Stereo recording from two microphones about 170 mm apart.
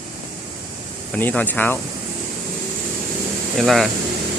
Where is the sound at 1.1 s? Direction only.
10° left (ahead or behind).